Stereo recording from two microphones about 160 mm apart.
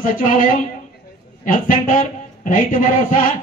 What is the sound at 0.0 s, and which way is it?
A man's voice, 60° left (ahead or behind).